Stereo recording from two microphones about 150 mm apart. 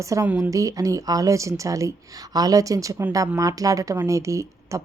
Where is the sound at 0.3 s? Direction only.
10° right (ahead or behind).